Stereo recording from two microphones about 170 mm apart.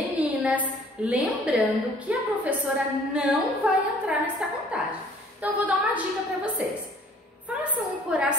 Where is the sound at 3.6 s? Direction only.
5° right (ahead or behind).